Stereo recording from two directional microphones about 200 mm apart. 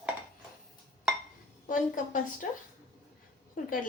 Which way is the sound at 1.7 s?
40° left (ahead or behind).